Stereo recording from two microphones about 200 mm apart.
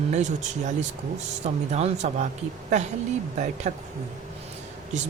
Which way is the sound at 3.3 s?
35° right (ahead or behind).